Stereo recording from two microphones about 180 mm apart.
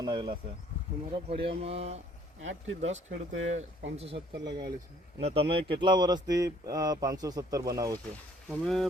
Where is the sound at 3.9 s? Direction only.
30° right (ahead or behind).